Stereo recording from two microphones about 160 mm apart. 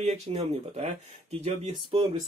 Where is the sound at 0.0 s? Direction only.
40° right (ahead or behind).